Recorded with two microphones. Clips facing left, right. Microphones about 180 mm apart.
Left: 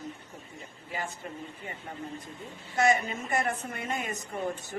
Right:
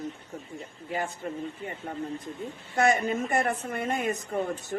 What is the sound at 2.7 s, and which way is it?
A woman's voice, 55° right (ahead or behind).